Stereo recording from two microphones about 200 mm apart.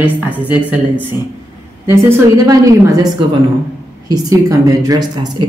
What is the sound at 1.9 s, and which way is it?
Speech, 15° right (ahead or behind).